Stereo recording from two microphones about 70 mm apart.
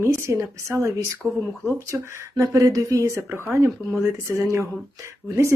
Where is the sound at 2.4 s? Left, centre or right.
Right.